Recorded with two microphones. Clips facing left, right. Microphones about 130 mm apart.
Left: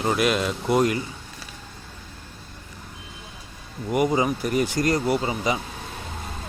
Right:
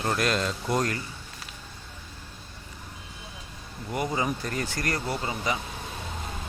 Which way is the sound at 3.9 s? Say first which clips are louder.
Left 7 dB; 15° left (ahead or behind).